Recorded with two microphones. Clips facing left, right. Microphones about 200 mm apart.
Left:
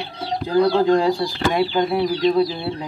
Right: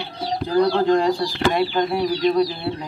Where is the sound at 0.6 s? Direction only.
5° left (ahead or behind).